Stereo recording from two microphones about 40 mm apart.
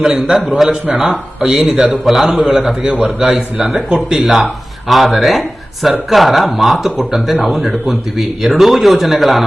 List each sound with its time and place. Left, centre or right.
0.0 s a man's voice: centre
3.8 s speech: right
4.1 s speech: centre